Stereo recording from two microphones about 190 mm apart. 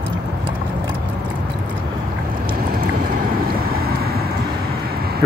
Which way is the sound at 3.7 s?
55° right (ahead or behind).